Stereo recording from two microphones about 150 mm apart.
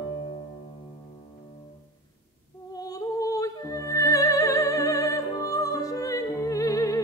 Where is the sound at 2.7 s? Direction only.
25° left (ahead or behind).